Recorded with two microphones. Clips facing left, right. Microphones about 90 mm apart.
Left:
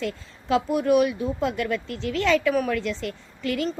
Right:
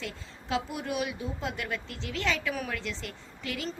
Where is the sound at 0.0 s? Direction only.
55° left (ahead or behind).